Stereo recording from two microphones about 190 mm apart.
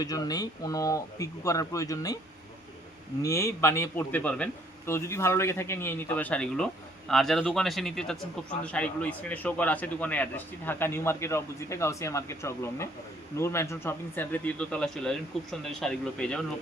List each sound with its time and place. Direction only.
0.0 s a man's voice: 20° left (ahead or behind)
3.2 s a man's voice: 15° left (ahead or behind)